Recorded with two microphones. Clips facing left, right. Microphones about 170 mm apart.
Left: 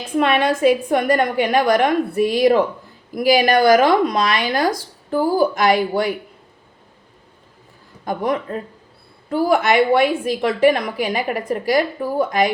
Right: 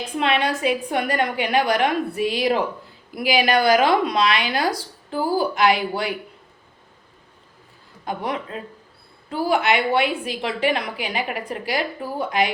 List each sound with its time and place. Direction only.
0.2 s speech: 50° left (ahead or behind)
8.0 s speech: 45° left (ahead or behind)